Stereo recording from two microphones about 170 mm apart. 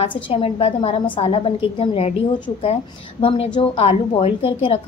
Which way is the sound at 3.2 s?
30° left (ahead or behind).